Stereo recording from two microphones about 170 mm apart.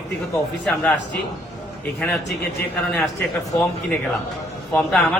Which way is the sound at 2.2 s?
80° left.